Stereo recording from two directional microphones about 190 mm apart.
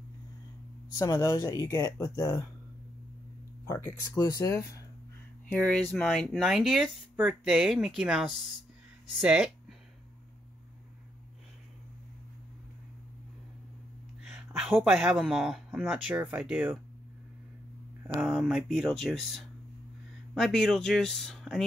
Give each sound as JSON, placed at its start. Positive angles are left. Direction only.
{"t": 0.9, "sound": "speech", "side_deg": 20}
{"t": 3.6, "sound": "speech", "side_deg": 15}
{"t": 14.2, "sound": "speech", "side_deg": -5}
{"t": 18.2, "sound": "speech", "side_deg": -5}